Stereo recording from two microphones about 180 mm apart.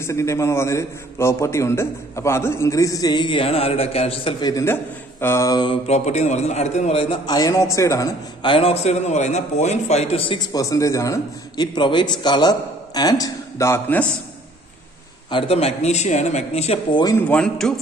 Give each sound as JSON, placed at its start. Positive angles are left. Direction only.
{"t": 0.0, "sound": "a man's voice", "side_deg": 15}
{"t": 5.9, "sound": "a man's voice", "side_deg": 40}
{"t": 15.3, "sound": "speech", "side_deg": 35}
{"t": 17.3, "sound": "a man's voice", "side_deg": 5}